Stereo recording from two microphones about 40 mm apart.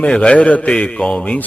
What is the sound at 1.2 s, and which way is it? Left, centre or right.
Speech, left.